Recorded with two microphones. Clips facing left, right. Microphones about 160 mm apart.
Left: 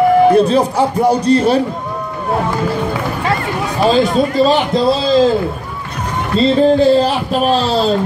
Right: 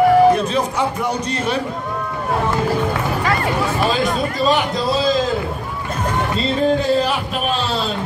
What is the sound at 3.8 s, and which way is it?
Speech, 30° left (ahead or behind).